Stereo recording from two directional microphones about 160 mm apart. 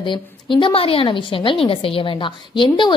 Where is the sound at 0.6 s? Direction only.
35° left (ahead or behind).